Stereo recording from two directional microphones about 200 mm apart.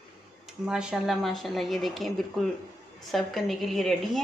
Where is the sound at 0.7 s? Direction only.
5° right (ahead or behind).